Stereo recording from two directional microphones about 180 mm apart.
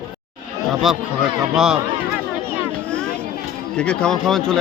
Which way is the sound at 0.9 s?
5° right (ahead or behind).